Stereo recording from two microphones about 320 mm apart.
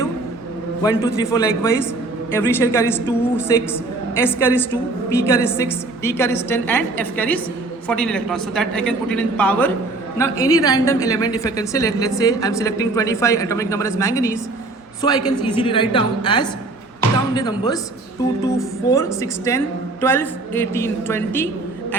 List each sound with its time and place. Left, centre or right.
0.8 s a woman's voice: centre
18.9 s a woman's voice: centre